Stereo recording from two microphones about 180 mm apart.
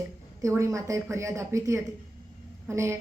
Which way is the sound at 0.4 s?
15° right (ahead or behind).